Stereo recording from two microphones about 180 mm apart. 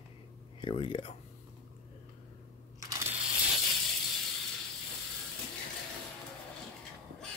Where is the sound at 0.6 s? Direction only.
30° left (ahead or behind).